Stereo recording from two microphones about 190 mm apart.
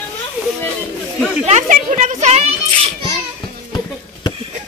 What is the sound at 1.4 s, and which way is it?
Speech, 35° right (ahead or behind).